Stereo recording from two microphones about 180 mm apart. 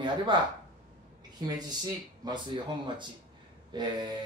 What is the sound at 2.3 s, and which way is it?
A man's voice, 25° right (ahead or behind).